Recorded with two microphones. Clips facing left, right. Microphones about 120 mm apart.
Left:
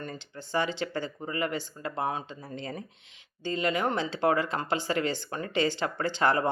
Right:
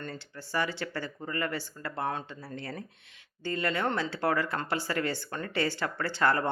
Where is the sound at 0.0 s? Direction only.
20° left (ahead or behind).